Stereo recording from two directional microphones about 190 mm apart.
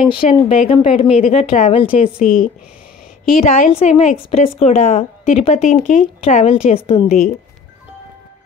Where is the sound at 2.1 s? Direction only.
45° left (ahead or behind).